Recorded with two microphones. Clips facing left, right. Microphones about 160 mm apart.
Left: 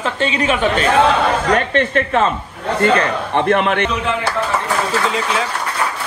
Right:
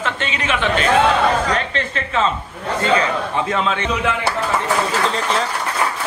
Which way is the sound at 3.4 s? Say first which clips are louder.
Left 8 dB; 65° left (ahead or behind).